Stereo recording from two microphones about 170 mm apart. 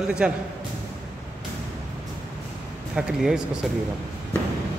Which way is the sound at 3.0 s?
5° right (ahead or behind).